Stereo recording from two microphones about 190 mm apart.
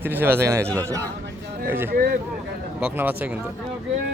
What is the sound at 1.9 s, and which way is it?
Speech, 50° right (ahead or behind).